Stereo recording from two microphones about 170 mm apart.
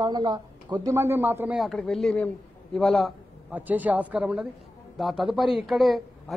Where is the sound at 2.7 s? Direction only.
5° left (ahead or behind).